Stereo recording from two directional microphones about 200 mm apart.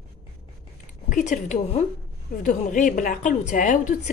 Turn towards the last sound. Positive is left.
turn(degrees=40)  # may be behind; listen again after turning